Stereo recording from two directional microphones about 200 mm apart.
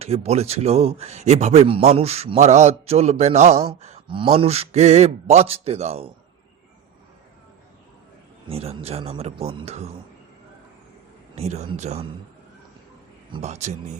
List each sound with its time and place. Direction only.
0.0 s a man's voice: 30° right (ahead or behind)
8.4 s a man's voice: 30° right (ahead or behind)
11.3 s a man's voice: 35° right (ahead or behind)
13.3 s a man's voice: 35° right (ahead or behind)